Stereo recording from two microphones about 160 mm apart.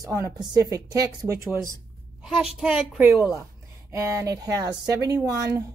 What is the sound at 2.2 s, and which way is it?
Speech, 5° right (ahead or behind).